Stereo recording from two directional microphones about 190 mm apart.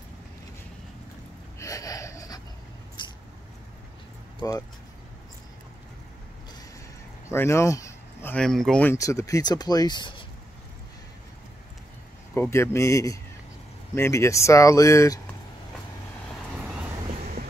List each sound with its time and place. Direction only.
1.6 s a sound: 20° left (ahead or behind)
3.0 s vehicle: 25° left (ahead or behind)
4.4 s speech: 20° left (ahead or behind)
7.2 s speech: 15° left (ahead or behind)
8.9 s speech: 15° left (ahead or behind)
12.4 s speech: 15° left (ahead or behind)